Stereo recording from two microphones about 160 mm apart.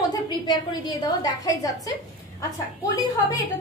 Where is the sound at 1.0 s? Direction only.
20° left (ahead or behind).